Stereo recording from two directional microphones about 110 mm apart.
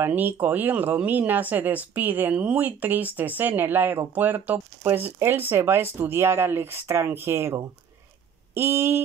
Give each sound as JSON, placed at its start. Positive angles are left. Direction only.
{"t": 0.0, "sound": "speech", "side_deg": -15}